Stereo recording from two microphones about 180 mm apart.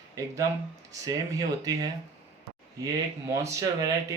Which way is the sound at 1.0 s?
20° right (ahead or behind).